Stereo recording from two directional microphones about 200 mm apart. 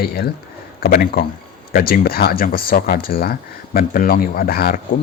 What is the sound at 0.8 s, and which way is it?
Speech, 45° left (ahead or behind).